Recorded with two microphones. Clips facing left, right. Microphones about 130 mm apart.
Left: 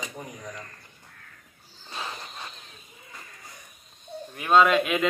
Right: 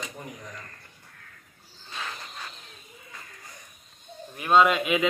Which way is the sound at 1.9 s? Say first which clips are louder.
Left 1 dB; 30° left (ahead or behind).